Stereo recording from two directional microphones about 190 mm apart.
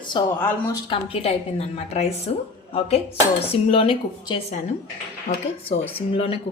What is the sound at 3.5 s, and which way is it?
Speech, 30° left (ahead or behind).